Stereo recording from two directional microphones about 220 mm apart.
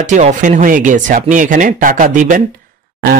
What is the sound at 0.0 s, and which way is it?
Speech, 35° right (ahead or behind).